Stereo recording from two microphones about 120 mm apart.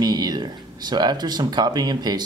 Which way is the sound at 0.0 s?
35° right (ahead or behind).